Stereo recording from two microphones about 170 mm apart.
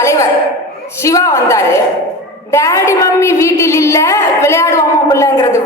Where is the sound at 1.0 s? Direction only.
20° left (ahead or behind).